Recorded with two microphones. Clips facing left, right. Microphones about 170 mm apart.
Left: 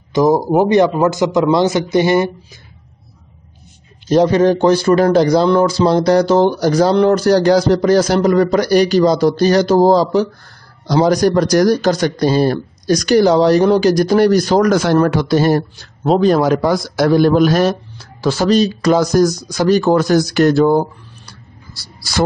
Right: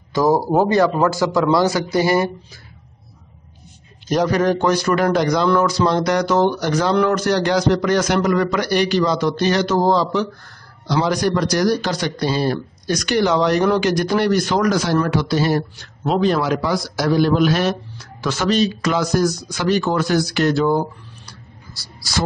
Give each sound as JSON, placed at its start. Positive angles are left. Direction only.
{"t": 0.1, "sound": "a man's voice", "side_deg": 20}
{"t": 4.1, "sound": "speech", "side_deg": 25}
{"t": 14.7, "sound": "a man's voice", "side_deg": 55}
{"t": 15.8, "sound": "a man's voice", "side_deg": 35}
{"t": 17.9, "sound": "speech", "side_deg": 30}